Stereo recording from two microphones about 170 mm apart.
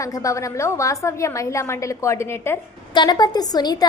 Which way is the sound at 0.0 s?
20° left (ahead or behind).